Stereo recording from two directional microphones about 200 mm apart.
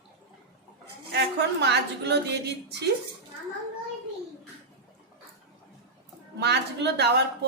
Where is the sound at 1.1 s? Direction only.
60° right (ahead or behind).